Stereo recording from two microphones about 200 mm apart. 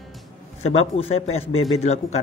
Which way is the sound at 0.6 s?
30° left (ahead or behind).